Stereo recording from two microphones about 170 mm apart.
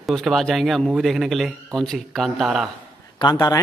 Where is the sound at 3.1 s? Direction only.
25° left (ahead or behind).